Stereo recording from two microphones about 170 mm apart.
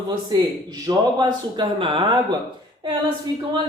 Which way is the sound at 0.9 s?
25° right (ahead or behind).